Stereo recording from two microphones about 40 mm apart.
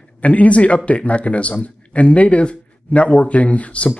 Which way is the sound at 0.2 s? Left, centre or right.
Left.